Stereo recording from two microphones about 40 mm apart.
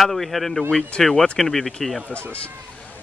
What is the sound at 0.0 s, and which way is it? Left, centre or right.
A man's voice, centre.